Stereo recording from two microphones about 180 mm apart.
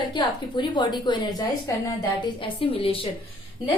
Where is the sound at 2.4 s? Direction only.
30° left (ahead or behind).